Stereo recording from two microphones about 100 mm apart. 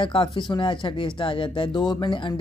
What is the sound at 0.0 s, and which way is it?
Speech, 60° left (ahead or behind).